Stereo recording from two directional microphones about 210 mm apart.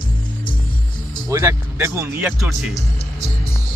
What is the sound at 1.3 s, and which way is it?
Speech, 15° right (ahead or behind).